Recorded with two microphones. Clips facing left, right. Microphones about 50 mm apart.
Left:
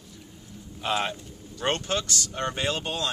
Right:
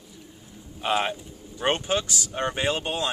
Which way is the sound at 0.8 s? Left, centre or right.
Centre.